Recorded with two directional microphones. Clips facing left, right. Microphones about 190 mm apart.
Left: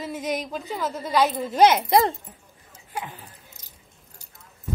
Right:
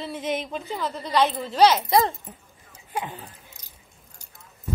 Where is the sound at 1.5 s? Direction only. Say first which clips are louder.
Left 1 dB; 50° left (ahead or behind).